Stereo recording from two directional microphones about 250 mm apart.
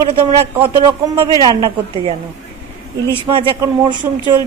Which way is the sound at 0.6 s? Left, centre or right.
Centre.